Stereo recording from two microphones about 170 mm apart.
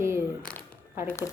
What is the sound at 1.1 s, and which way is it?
Speech, 15° left (ahead or behind).